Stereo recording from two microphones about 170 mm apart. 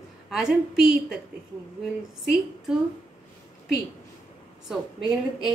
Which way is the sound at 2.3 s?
Centre (ahead or behind).